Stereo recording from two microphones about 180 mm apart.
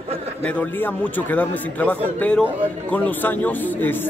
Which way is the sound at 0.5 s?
10° left (ahead or behind).